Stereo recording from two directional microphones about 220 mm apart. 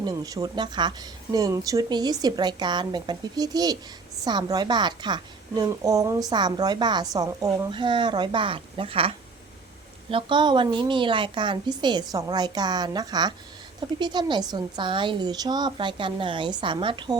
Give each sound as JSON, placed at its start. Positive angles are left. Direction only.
{"t": 0.0, "sound": "a woman's voice", "side_deg": -15}